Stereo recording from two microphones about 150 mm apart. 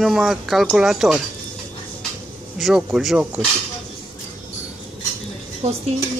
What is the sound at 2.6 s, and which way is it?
Speech, centre (ahead or behind).